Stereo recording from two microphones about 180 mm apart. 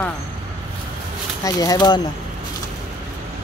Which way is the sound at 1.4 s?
20° left (ahead or behind).